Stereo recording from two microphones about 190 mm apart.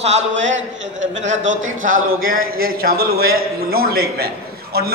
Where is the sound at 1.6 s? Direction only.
90° right.